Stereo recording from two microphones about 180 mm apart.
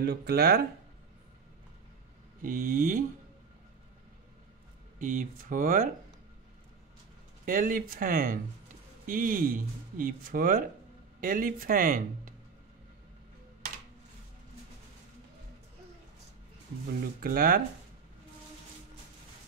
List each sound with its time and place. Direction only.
0.0 s speech: 65° right (ahead or behind)
2.4 s speech: 50° right (ahead or behind)
4.9 s speech: 50° right (ahead or behind)
7.4 s speech: 50° right (ahead or behind)
17.2 s speech: 55° right (ahead or behind)